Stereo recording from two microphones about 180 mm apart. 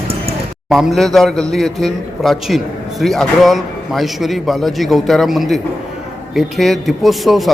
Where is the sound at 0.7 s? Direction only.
Centre (ahead or behind).